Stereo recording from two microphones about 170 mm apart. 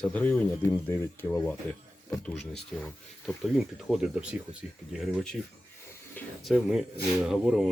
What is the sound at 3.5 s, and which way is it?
Speech, 5° right (ahead or behind).